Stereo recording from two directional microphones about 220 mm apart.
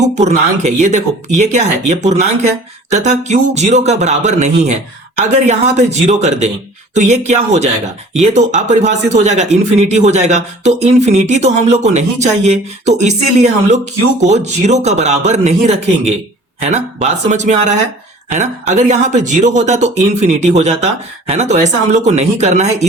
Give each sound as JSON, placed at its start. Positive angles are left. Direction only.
{"t": 0.0, "sound": "speech", "side_deg": -30}